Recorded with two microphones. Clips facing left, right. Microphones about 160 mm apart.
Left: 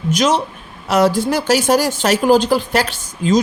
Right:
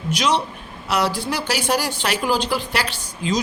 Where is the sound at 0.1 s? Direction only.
45° left (ahead or behind).